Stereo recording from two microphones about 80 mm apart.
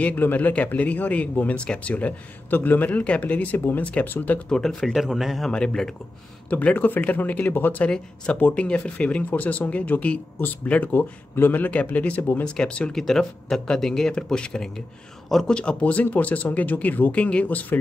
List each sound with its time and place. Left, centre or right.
0.0 s speech: left
4.5 s speech: centre
5.5 s speech: centre
6.5 s speech: centre
12.4 s speech: centre